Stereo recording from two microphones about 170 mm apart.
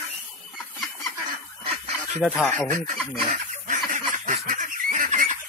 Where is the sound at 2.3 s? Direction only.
10° left (ahead or behind).